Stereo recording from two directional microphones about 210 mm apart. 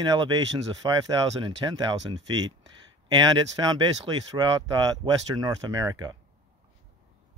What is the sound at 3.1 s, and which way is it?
Speech, 20° right (ahead or behind).